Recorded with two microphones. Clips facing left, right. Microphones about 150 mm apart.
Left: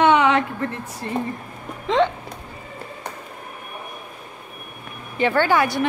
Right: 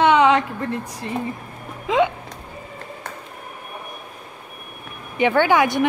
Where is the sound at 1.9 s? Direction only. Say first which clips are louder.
Even; 5° right (ahead or behind).